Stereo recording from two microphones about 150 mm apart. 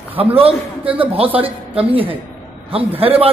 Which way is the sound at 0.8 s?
10° right (ahead or behind).